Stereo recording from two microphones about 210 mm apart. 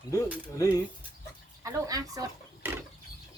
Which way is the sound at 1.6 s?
15° right (ahead or behind).